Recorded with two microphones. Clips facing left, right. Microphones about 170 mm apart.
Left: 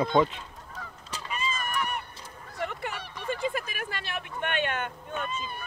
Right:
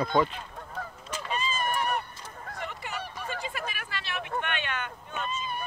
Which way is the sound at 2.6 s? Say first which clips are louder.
Left 7 dB; 55° left (ahead or behind).